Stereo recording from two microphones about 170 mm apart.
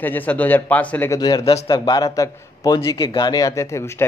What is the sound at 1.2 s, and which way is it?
Speech, 25° left (ahead or behind).